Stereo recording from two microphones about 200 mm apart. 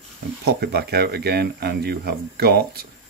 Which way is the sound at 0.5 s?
55° right (ahead or behind).